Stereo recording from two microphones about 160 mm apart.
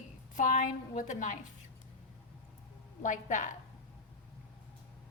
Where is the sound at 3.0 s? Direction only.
55° left (ahead or behind).